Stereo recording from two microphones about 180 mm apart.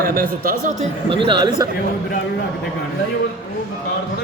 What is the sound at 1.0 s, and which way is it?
Speech, 30° right (ahead or behind).